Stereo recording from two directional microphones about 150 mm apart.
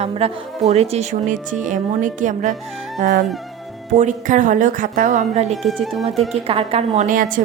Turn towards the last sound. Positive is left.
turn(degrees=-60)  # may be behind; listen again after turning